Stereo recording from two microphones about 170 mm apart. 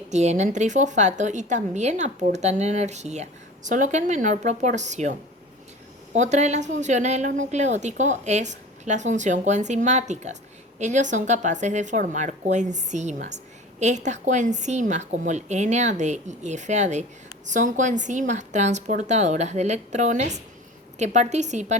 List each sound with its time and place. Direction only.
0.1 s a woman's voice: 40° right (ahead or behind)
6.1 s a woman's voice: 45° right (ahead or behind)